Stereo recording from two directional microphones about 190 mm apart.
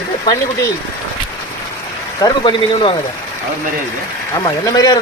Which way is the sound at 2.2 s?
25° left (ahead or behind).